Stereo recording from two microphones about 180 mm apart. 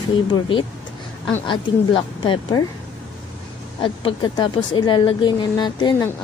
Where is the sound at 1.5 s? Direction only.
25° left (ahead or behind).